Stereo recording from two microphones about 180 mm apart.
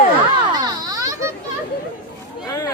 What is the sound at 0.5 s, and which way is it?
Children playing, 20° right (ahead or behind).